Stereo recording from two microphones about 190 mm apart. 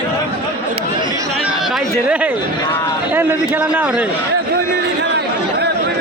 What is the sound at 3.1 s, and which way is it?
Speech, 10° right (ahead or behind).